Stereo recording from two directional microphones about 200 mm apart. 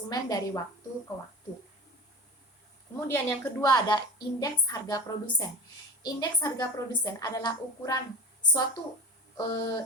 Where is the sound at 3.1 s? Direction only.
15° left (ahead or behind).